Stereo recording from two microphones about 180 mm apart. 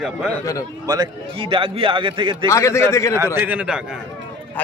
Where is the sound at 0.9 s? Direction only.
25° right (ahead or behind).